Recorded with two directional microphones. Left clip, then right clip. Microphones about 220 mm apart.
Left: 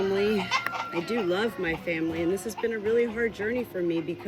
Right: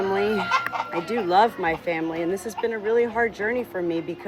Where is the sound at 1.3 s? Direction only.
10° left (ahead or behind).